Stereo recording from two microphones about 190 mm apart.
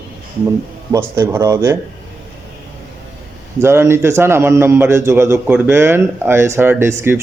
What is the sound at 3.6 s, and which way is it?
A man's voice, 15° right (ahead or behind).